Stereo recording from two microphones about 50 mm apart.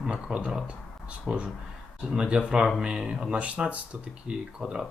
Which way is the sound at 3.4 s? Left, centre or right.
Right.